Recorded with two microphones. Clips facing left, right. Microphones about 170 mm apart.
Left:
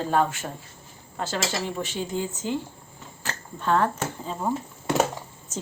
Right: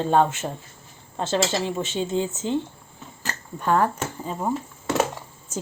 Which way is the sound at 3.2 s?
10° right (ahead or behind).